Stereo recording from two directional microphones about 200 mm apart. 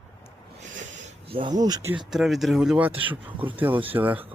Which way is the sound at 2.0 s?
Centre (ahead or behind).